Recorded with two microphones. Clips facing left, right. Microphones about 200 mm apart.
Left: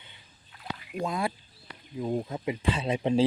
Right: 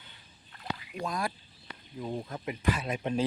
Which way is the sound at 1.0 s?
25° left (ahead or behind).